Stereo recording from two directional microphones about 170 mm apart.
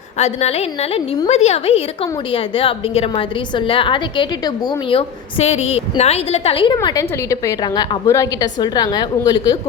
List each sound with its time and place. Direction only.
0.2 s a woman's voice: 40° left (ahead or behind)
6.8 s a woman's voice: 20° left (ahead or behind)